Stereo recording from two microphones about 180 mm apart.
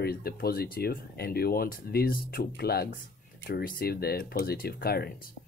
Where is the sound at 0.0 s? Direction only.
60° left (ahead or behind).